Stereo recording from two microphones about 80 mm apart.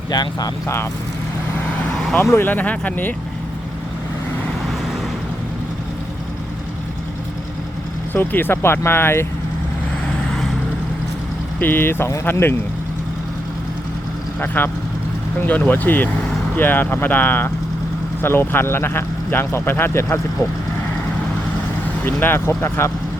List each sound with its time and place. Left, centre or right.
0.1 s speech: left
2.3 s speech: left
8.1 s speech: left
11.6 s speech: left
14.4 s speech: left
22.0 s speech: left